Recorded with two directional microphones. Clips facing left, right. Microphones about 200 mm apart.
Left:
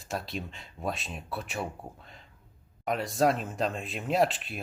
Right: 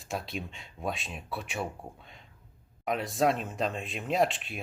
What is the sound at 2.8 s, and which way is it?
Speech, centre (ahead or behind).